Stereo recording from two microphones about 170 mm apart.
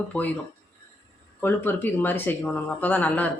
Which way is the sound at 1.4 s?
10° left (ahead or behind).